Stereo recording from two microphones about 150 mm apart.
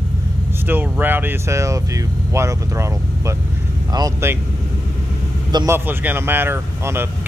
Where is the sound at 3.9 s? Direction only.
25° right (ahead or behind).